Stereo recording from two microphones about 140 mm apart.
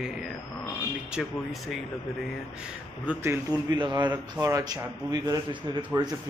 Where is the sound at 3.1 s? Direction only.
20° right (ahead or behind).